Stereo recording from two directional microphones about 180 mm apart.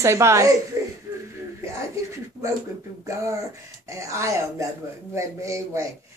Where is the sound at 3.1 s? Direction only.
15° right (ahead or behind).